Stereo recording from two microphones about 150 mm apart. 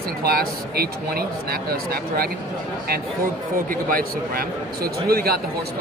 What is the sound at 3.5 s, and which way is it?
A man's voice, 70° right (ahead or behind).